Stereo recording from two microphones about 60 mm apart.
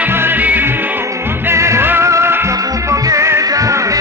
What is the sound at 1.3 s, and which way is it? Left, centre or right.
Music, right.